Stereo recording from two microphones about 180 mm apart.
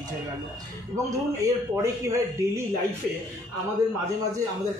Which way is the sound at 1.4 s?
15° right (ahead or behind).